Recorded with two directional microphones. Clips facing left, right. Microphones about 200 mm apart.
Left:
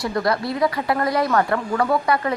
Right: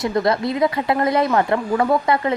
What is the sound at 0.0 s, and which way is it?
A woman's voice, 20° right (ahead or behind).